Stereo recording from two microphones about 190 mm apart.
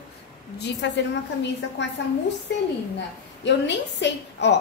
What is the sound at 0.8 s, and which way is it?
Speech, 70° left (ahead or behind).